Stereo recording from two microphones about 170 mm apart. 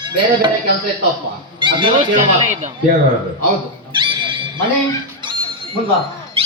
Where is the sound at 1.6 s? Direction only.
30° right (ahead or behind).